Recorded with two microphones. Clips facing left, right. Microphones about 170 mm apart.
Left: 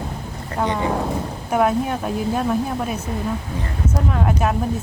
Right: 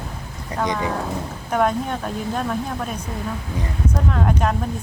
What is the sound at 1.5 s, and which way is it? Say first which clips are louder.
A woman's voice: left 2 dB; 5° left (ahead or behind).